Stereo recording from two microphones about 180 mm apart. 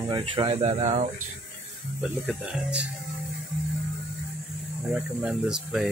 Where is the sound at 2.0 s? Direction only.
Centre (ahead or behind).